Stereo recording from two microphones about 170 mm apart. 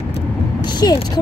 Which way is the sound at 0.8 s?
20° left (ahead or behind).